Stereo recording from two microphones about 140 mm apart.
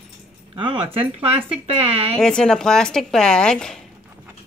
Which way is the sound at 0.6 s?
40° right (ahead or behind).